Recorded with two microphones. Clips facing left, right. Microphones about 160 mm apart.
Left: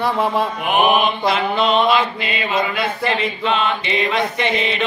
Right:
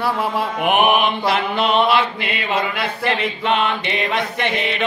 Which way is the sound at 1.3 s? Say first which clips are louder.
Left 2 dB; 60° right (ahead or behind).